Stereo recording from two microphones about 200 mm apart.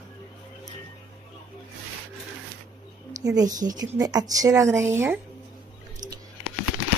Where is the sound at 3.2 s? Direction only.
20° right (ahead or behind).